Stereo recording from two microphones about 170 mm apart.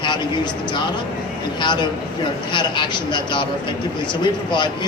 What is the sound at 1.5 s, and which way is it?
A man's voice, 25° left (ahead or behind).